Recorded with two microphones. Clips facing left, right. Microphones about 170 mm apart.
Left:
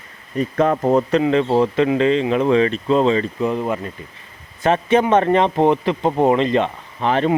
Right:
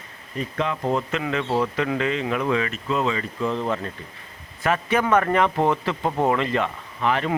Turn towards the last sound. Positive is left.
turn(degrees=30)  # may be behind; listen again after turning